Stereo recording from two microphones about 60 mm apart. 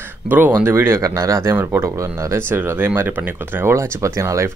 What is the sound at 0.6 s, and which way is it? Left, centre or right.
Speech, right.